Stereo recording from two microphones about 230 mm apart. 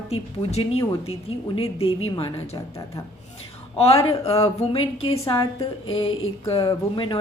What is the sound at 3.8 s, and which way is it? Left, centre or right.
A woman's voice, left.